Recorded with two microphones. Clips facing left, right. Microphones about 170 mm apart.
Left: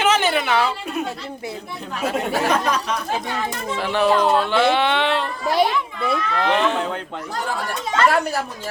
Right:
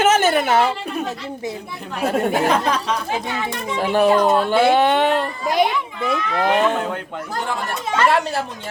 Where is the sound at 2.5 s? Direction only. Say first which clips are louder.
Right 1 dB; 30° right (ahead or behind).